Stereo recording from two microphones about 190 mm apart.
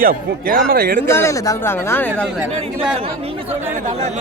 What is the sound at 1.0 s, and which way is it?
Speech, 15° left (ahead or behind).